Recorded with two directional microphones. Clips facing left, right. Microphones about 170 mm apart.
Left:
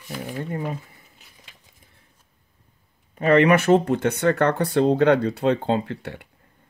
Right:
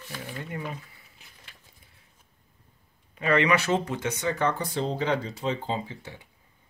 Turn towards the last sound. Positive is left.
turn(degrees=65)  # may be behind; listen again after turning